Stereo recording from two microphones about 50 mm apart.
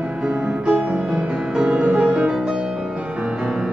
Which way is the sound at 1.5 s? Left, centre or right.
Centre.